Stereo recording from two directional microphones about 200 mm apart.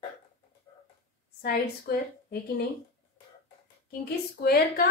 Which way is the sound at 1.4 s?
50° left (ahead or behind).